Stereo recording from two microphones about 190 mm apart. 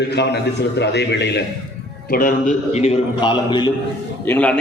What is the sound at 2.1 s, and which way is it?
A man's voice, 45° left (ahead or behind).